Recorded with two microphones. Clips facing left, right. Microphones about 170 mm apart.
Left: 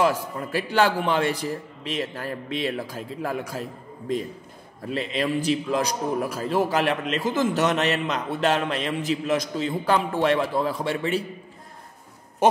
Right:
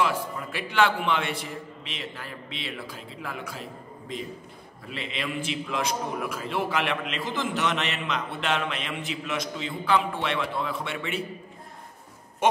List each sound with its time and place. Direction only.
0.0 s a man's voice: 40° left (ahead or behind)
4.8 s a man's voice: 40° left (ahead or behind)